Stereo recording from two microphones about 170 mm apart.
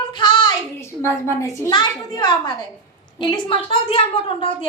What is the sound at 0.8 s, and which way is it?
A woman's voice, 15° left (ahead or behind).